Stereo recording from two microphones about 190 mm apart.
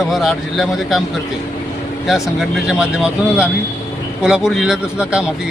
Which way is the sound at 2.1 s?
Centre (ahead or behind).